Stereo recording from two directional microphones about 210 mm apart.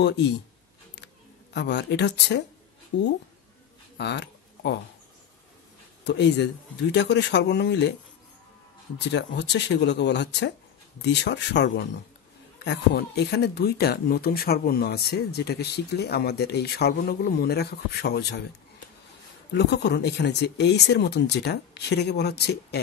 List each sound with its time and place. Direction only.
0.0 s speech: 55° left (ahead or behind)
0.9 s a sound: 55° left (ahead or behind)
4.0 s a sound: 55° left (ahead or behind)
6.0 s speech: 55° left (ahead or behind)
9.0 s speech: 55° left (ahead or behind)
19.5 s speech: 55° left (ahead or behind)